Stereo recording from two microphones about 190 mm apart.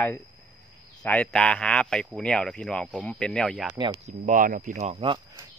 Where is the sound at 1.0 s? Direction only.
5° left (ahead or behind).